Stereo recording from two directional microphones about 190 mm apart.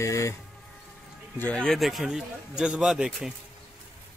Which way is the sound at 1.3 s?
5° left (ahead or behind).